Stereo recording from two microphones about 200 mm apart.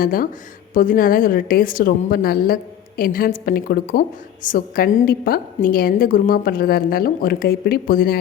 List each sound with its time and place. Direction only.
0.0 s a woman's voice: 45° left (ahead or behind)